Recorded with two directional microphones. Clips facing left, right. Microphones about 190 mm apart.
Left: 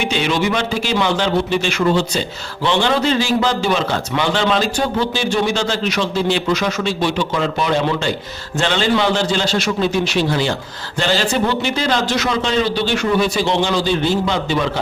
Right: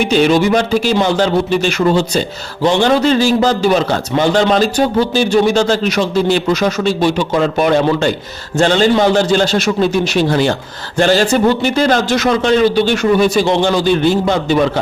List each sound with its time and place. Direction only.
0.0 s a man's voice: 45° right (ahead or behind)